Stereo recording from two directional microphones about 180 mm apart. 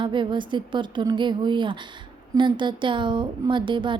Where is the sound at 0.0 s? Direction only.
25° right (ahead or behind).